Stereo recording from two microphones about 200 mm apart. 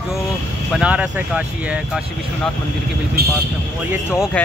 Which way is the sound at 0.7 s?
5° right (ahead or behind).